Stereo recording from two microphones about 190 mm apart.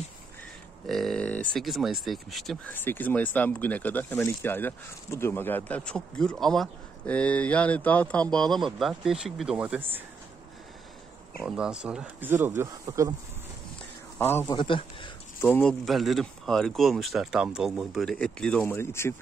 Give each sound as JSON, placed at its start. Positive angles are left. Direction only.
{"t": 0.8, "sound": "speech", "side_deg": 0}
{"t": 11.4, "sound": "speech", "side_deg": -5}
{"t": 14.1, "sound": "a man's voice", "side_deg": 10}
{"t": 14.6, "sound": "speech", "side_deg": 25}
{"t": 15.4, "sound": "speech", "side_deg": 5}